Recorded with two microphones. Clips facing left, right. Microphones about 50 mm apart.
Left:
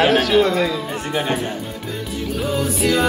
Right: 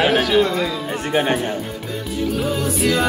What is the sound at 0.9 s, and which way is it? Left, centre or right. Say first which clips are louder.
Music: right 3 dB; right.